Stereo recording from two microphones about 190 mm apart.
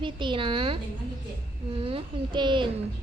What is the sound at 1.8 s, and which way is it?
Speech, 25° right (ahead or behind).